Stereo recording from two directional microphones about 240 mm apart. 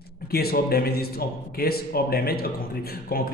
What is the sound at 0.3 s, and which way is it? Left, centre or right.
A man's voice, left.